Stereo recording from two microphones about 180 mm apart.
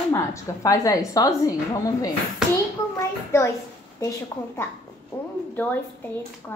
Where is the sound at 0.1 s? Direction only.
15° left (ahead or behind).